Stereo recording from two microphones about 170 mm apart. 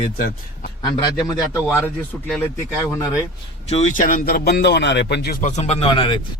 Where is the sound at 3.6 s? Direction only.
40° left (ahead or behind); by 5.4 s 75° left (ahead or behind).